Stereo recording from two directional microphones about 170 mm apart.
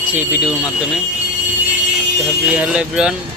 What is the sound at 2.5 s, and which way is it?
Speech, 5° right (ahead or behind).